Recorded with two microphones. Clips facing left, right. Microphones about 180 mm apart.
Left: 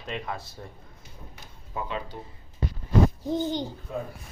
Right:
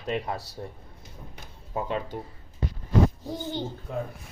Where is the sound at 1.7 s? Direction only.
45° right (ahead or behind).